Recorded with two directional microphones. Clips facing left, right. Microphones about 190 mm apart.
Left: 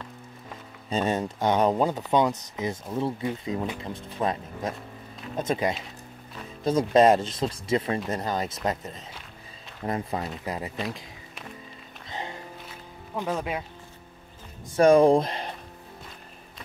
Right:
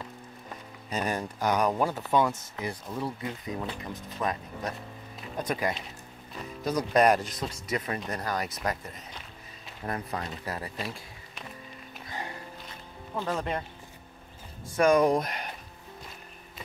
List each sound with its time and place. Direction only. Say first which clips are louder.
0.8 s speech: left 5 dB; 25° left (ahead or behind)
12.1 s music: left 3 dB; 20° left (ahead or behind)
12.6 s music: left 1 dB; 10° left (ahead or behind)
14.8 s speech: left 5 dB; 30° left (ahead or behind)